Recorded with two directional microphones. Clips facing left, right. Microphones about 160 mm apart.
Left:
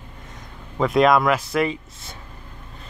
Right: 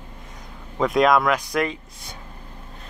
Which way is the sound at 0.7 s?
Centre (ahead or behind).